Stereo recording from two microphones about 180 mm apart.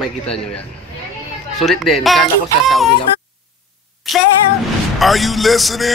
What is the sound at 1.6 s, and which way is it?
Speech, centre (ahead or behind).